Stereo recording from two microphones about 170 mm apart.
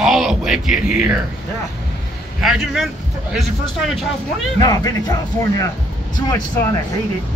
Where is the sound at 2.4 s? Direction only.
Centre (ahead or behind).